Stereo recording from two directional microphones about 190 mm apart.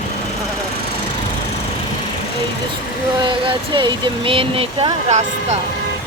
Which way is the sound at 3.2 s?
25° right (ahead or behind).